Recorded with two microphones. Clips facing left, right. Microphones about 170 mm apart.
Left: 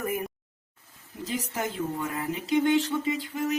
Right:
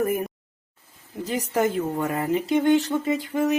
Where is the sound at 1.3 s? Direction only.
55° right (ahead or behind).